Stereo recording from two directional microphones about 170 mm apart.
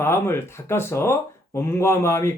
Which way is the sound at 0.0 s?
15° left (ahead or behind).